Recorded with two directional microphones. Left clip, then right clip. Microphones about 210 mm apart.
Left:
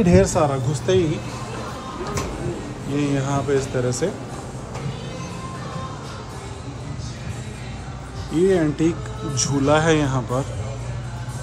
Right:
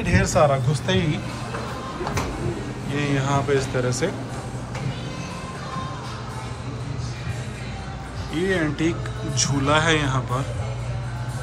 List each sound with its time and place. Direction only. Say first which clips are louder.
0.1 s speech: right 2 dB; 25° left (ahead or behind)
2.9 s speech: left 1 dB; 15° left (ahead or behind)
8.4 s speech: left 5 dB; 20° left (ahead or behind)